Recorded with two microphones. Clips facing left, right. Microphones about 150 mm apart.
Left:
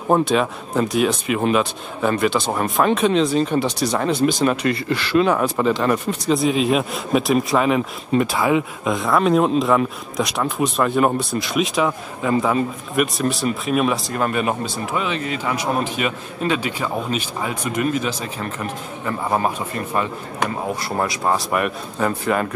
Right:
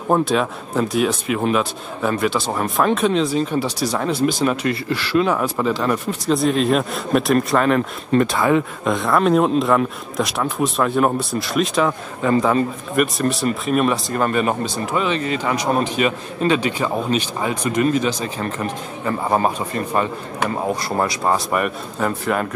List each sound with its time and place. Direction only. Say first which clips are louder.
0.1 s speech: left 1 dB; centre (ahead or behind)
19.2 s speech: right 2 dB; 20° right (ahead or behind)
20.4 s speech: right 3 dB; centre (ahead or behind)